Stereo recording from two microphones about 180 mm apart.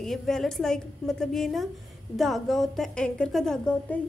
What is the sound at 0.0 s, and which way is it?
A child's voice, centre (ahead or behind).